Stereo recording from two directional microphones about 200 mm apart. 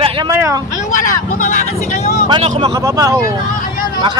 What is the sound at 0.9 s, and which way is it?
Speech, 40° left (ahead or behind).